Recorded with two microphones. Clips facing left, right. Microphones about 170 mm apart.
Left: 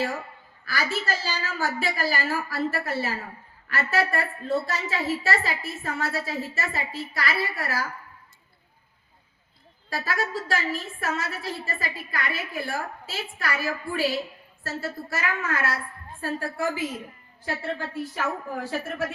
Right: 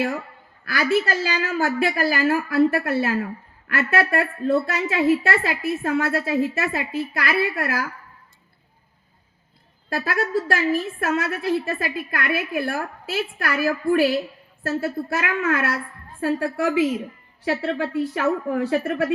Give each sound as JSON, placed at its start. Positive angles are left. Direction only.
{"t": 0.6, "sound": "a woman's voice", "side_deg": -60}
{"t": 9.9, "sound": "a woman's voice", "side_deg": -55}
{"t": 16.4, "sound": "a woman's voice", "side_deg": -70}